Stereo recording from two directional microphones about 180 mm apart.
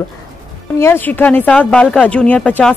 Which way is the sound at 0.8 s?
15° left (ahead or behind).